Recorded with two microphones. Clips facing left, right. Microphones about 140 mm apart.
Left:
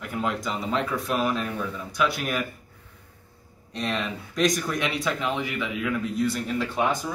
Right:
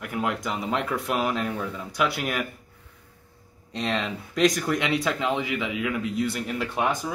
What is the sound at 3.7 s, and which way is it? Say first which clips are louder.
A man's voice: right 1 dB; 25° right (ahead or behind).